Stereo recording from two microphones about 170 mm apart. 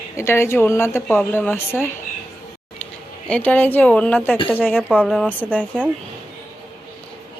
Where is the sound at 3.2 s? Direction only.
5° left (ahead or behind).